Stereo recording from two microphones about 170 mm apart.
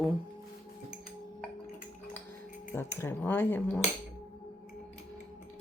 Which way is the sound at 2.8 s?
15° left (ahead or behind).